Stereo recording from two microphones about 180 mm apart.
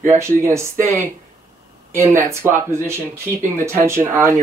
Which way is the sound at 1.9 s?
15° right (ahead or behind).